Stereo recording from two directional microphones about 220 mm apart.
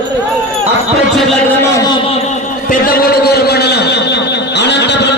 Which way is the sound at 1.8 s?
25° left (ahead or behind).